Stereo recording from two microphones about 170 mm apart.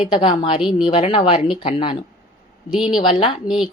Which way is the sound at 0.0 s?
30° left (ahead or behind).